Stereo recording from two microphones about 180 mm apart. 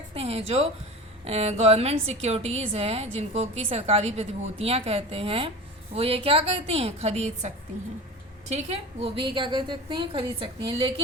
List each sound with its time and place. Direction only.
0.1 s a woman's voice: 35° right (ahead or behind)